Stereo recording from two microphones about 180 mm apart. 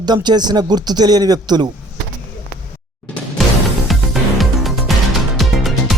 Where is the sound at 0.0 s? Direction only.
25° right (ahead or behind).